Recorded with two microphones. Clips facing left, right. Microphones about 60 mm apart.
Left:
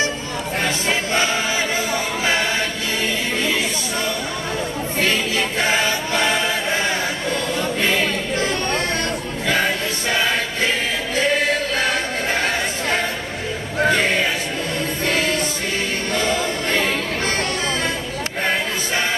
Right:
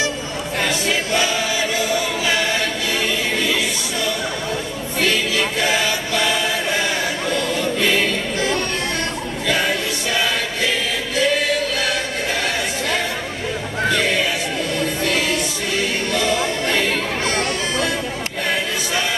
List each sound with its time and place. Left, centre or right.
0.6 s choir: left
3.3 s a sound: left
5.0 s choir: left
10.1 s choir: left
13.8 s a sound: left
15.0 s music: left
16.6 s chatter: left